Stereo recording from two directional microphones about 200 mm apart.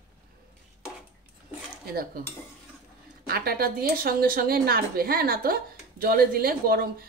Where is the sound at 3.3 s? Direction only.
50° right (ahead or behind).